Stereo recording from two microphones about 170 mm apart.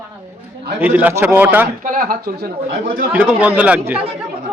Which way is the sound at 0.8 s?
10° right (ahead or behind).